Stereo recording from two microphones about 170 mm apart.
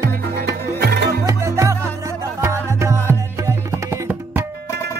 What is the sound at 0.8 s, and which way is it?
Music, 70° right (ahead or behind).